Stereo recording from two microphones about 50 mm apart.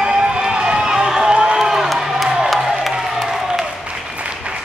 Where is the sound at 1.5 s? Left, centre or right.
Centre.